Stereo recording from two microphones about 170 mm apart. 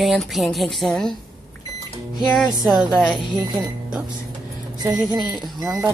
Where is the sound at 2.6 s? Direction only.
Centre (ahead or behind).